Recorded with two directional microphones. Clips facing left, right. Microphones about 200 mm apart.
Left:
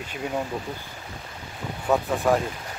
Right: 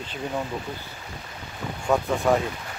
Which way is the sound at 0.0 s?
10° left (ahead or behind).